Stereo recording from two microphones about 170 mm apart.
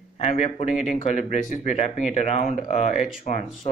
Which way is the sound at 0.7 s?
5° right (ahead or behind).